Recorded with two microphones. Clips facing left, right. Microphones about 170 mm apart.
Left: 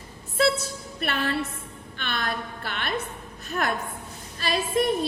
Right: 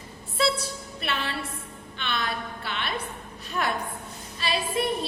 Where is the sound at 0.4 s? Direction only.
50° left (ahead or behind).